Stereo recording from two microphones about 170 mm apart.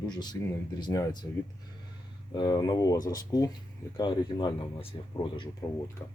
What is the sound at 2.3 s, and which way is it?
Speech, 25° left (ahead or behind).